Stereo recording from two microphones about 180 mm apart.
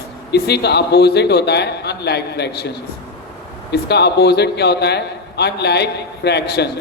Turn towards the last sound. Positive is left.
turn(degrees=65)  # may be behind; listen again after turning